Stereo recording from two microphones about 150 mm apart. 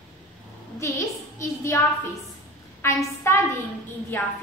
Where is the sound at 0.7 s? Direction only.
20° left (ahead or behind).